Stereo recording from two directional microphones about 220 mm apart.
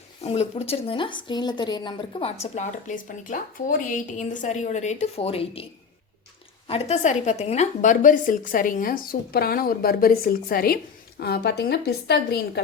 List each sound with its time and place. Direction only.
0.2 s speech: 25° left (ahead or behind)
6.7 s a woman's voice: 30° left (ahead or behind); by 12.6 s 50° left (ahead or behind)